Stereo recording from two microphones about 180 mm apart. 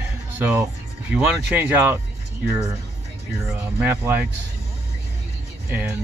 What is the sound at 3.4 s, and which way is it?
Speech, 10° right (ahead or behind).